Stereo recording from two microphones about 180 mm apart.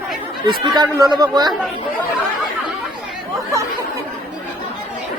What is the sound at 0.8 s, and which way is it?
Speech, 20° right (ahead or behind).